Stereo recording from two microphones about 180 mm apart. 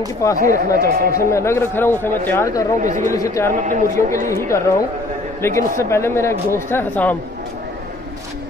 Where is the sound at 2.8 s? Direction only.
45° right (ahead or behind).